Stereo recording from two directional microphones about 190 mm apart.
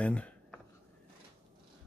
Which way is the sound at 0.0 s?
5° left (ahead or behind).